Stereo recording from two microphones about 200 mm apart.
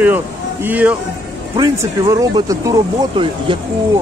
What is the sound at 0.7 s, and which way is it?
Speech, 10° right (ahead or behind).